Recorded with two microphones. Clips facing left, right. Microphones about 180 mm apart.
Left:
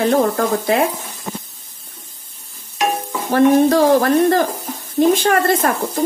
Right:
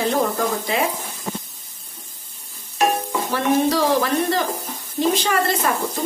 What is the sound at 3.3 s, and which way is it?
Speech, 50° left (ahead or behind).